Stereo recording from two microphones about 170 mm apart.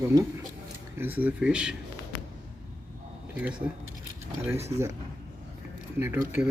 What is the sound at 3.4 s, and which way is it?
Speech, 10° right (ahead or behind).